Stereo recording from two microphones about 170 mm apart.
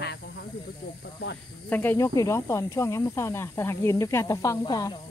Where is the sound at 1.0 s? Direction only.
75° left (ahead or behind).